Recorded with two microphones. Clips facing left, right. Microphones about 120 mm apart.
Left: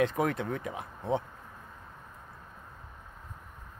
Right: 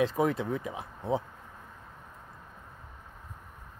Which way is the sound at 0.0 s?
30° right (ahead or behind).